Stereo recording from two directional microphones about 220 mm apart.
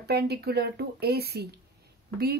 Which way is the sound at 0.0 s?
45° right (ahead or behind).